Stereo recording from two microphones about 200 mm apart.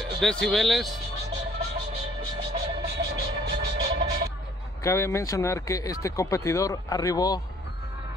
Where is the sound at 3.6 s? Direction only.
60° right (ahead or behind).